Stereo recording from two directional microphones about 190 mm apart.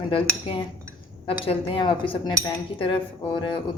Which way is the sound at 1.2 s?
30° left (ahead or behind).